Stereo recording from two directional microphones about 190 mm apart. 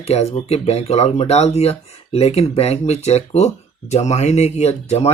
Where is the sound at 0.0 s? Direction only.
35° left (ahead or behind).